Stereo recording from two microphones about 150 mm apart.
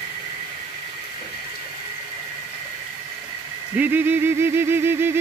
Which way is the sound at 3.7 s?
10° right (ahead or behind).